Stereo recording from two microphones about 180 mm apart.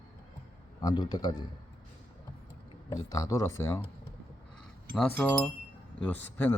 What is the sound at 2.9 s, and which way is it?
Speech, 20° left (ahead or behind).